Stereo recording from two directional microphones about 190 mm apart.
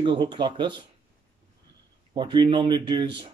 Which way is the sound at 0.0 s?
25° right (ahead or behind).